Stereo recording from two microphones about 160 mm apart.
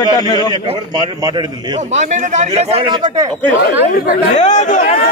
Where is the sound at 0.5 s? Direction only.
30° right (ahead or behind).